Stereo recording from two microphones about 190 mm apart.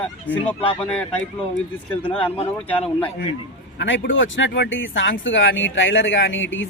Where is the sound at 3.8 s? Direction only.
85° left.